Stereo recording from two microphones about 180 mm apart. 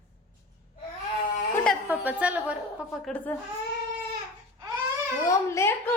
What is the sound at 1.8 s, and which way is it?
A woman's voice, 10° right (ahead or behind).